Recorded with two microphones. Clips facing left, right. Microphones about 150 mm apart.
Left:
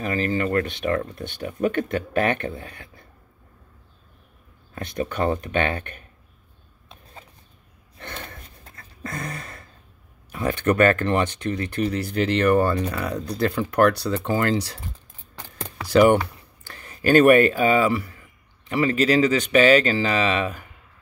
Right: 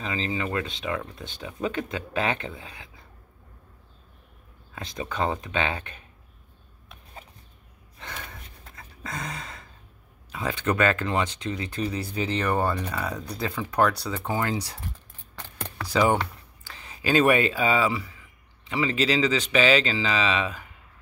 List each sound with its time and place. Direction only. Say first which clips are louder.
0.0 s speech: left 6 dB; 60° left (ahead or behind)
4.7 s speech: left 4 dB; 60° left (ahead or behind)
8.7 s a sound: left 3 dB; 55° left (ahead or behind)
10.3 s speech: left 5 dB; 60° left (ahead or behind); by 14.8 s 90° left
15.9 s speech: left 7 dB; 70° left (ahead or behind)
16.6 s speech: left 6 dB; 55° left (ahead or behind)